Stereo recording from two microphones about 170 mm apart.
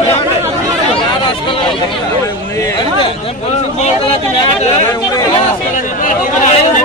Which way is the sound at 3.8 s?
35° left (ahead or behind).